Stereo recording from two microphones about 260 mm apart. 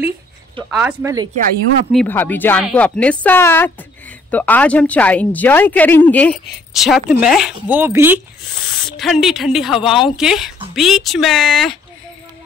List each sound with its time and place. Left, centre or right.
0.7 s speech: centre
1.9 s speech: centre